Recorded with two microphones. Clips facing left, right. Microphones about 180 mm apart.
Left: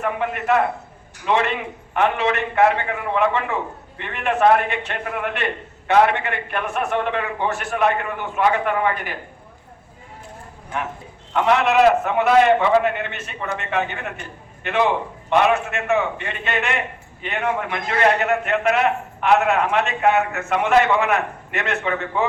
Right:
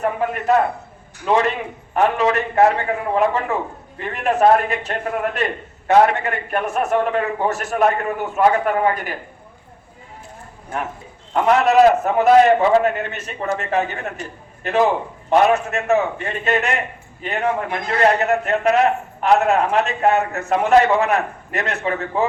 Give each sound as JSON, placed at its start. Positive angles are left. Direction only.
{"t": 0.0, "sound": "a man's voice", "side_deg": -35}
{"t": 11.3, "sound": "a man's voice", "side_deg": -40}